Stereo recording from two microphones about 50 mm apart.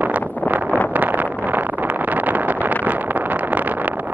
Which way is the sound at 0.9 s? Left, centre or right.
Right.